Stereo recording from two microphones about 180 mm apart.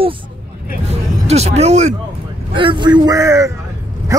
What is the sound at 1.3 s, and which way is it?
Speech, 35° right (ahead or behind).